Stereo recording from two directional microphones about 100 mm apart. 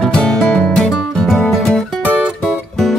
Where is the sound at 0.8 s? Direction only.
Centre (ahead or behind).